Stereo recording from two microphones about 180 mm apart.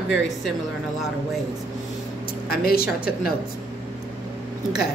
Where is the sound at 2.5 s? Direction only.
60° left (ahead or behind).